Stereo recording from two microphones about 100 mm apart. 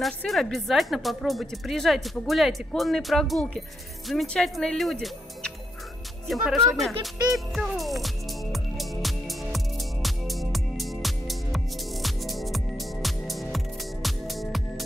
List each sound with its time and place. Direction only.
0.3 s speech: centre (ahead or behind)
7.3 s music: centre (ahead or behind)